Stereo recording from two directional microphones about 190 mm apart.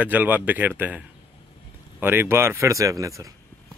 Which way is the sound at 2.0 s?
10° right (ahead or behind).